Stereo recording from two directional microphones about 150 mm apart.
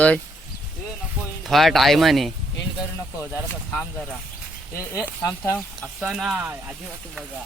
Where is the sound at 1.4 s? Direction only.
Centre (ahead or behind).